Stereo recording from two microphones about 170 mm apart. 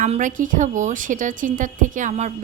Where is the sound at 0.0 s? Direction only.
50° right (ahead or behind).